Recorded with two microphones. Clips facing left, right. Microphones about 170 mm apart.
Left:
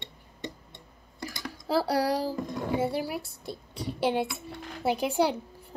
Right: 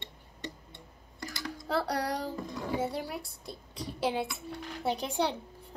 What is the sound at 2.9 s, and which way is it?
A child's voice, 5° left (ahead or behind).